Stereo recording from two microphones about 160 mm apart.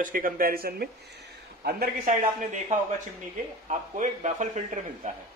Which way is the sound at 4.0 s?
50° right (ahead or behind).